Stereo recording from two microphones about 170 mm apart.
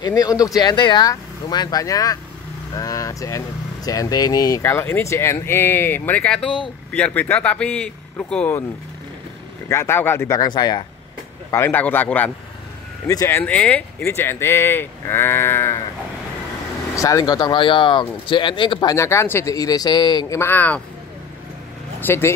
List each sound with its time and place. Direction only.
0.0 s speech: 20° left (ahead or behind)
9.7 s speech: 15° left (ahead or behind)
11.5 s speech: 10° left (ahead or behind)
16.9 s speech: 20° left (ahead or behind)
22.0 s speech: 15° left (ahead or behind)